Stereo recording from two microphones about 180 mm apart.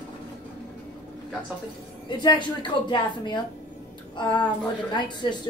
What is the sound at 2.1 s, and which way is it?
A woman's voice, 25° left (ahead or behind).